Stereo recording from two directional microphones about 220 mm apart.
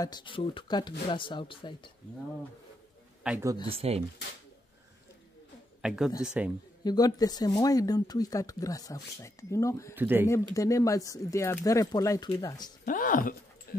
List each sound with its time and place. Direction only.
0.0 s speech: 20° left (ahead or behind)
3.3 s speech: 10° right (ahead or behind)
3.6 s speech: 25° right (ahead or behind)
5.8 s a man's voice: 5° right (ahead or behind)
6.8 s speech: 20° left (ahead or behind)
9.9 s speech: 10° right (ahead or behind)
10.2 s speech: 15° left (ahead or behind)
12.8 s speech: 35° left (ahead or behind)
13.7 s dog: 40° left (ahead or behind)